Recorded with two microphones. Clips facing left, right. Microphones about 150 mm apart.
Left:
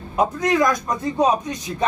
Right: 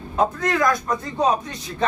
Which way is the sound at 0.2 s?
20° left (ahead or behind).